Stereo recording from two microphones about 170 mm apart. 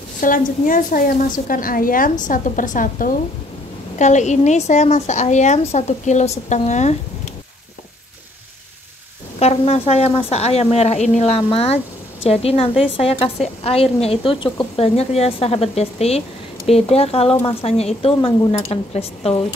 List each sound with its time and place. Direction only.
0.2 s a woman's voice: 55° left (ahead or behind)
9.4 s speech: 40° left (ahead or behind)